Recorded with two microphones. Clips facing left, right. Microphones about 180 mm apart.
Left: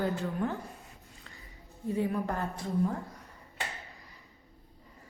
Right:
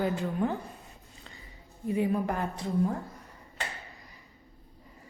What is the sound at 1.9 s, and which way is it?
Speech, 15° right (ahead or behind).